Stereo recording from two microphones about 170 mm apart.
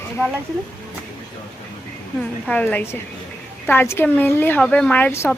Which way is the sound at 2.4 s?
5° left (ahead or behind).